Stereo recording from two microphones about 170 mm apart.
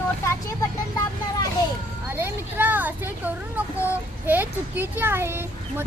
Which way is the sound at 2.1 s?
10° right (ahead or behind).